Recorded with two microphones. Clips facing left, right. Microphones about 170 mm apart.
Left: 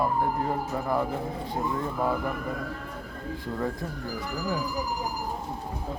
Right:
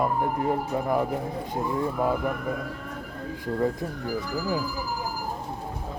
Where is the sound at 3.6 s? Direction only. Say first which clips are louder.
Right 6 dB; 20° right (ahead or behind).